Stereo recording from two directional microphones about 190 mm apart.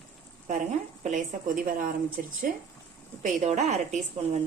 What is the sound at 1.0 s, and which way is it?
A woman's voice, 45° right (ahead or behind).